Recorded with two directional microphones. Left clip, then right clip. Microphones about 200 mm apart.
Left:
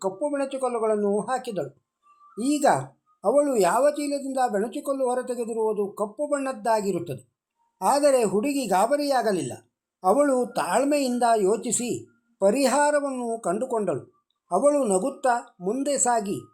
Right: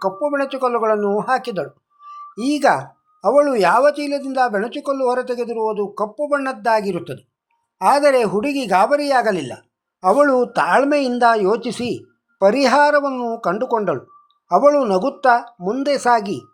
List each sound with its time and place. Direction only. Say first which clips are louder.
0.0 s speech: right 7 dB; centre (ahead or behind)